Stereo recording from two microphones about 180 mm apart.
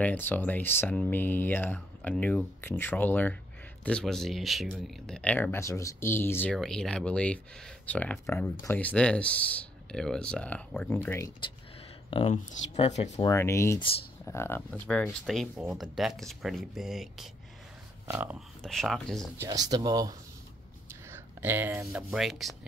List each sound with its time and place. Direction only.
0.0 s speech: 10° left (ahead or behind)
12.1 s speech: 30° left (ahead or behind)
13.2 s speech: 15° left (ahead or behind); by 18.4 s 10° right (ahead or behind)
18.6 s speech: centre (ahead or behind)
19.4 s speech: 20° right (ahead or behind)
21.1 s a sound: 10° right (ahead or behind)
22.1 s speech: centre (ahead or behind)